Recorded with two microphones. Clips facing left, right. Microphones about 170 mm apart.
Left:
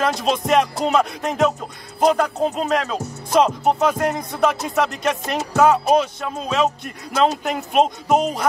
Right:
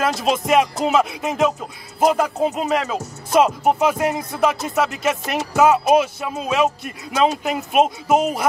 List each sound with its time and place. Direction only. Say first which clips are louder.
0.0 s speech: even; 5° right (ahead or behind)